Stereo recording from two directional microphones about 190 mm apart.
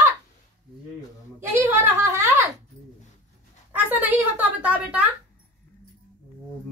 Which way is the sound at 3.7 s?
10° right (ahead or behind).